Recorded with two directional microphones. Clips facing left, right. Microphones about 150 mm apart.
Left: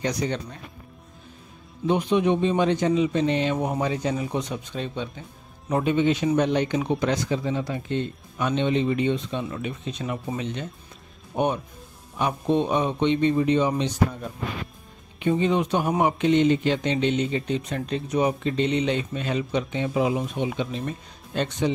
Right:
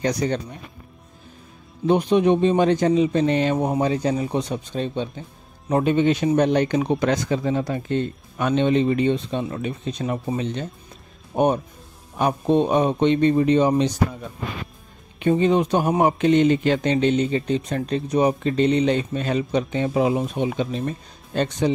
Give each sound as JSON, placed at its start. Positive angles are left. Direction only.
{"t": 0.0, "sound": "speech", "side_deg": -40}
{"t": 1.9, "sound": "speech", "side_deg": -40}
{"t": 3.5, "sound": "speech", "side_deg": -20}
{"t": 3.8, "sound": "speech", "side_deg": -35}
{"t": 15.1, "sound": "speech", "side_deg": -50}